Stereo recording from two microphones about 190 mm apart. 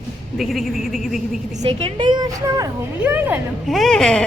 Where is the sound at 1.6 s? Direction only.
30° right (ahead or behind).